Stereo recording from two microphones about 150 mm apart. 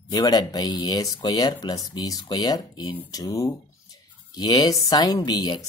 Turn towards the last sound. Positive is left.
turn(degrees=30)  # may be behind; listen again after turning